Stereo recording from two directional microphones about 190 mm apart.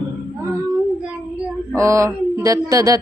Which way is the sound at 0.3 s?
15° right (ahead or behind).